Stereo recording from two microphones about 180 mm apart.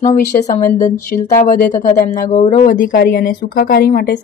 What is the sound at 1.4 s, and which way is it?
Speech, 50° left (ahead or behind).